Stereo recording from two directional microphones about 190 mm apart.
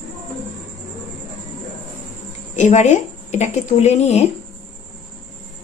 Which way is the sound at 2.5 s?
40° left (ahead or behind).